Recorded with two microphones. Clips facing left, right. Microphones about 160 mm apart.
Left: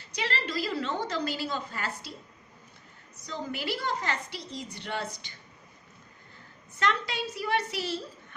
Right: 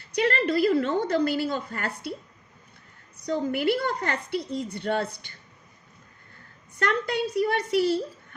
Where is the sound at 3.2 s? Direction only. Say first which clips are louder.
Right 9 dB; 55° right (ahead or behind).